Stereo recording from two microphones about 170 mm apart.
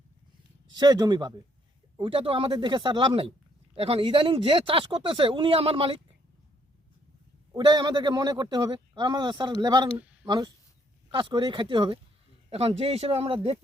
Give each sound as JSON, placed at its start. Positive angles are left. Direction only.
{"t": 0.8, "sound": "a man's voice", "side_deg": -25}
{"t": 7.5, "sound": "a man's voice", "side_deg": -25}